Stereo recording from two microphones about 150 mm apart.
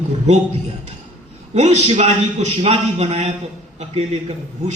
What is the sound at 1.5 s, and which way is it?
A man's voice, 50° right (ahead or behind).